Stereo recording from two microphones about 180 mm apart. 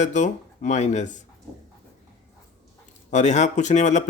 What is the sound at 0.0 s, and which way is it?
Speech, 40° left (ahead or behind).